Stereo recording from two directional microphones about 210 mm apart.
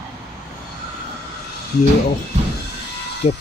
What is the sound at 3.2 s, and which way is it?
Speech, 30° left (ahead or behind).